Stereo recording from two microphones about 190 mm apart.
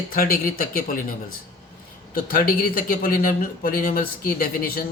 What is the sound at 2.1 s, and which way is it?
A man's voice, 50° left (ahead or behind).